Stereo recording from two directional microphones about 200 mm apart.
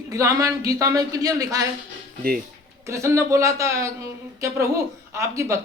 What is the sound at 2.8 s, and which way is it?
Speech, 15° right (ahead or behind).